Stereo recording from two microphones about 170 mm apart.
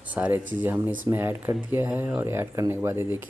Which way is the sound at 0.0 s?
10° right (ahead or behind).